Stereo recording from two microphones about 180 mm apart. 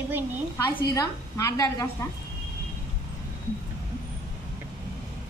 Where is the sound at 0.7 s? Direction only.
20° left (ahead or behind).